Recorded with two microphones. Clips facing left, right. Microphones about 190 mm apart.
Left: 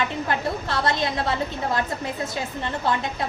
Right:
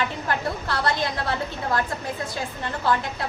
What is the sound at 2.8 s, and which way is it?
Speech, 20° left (ahead or behind).